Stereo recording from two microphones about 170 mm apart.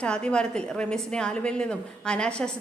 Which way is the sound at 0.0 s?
5° left (ahead or behind).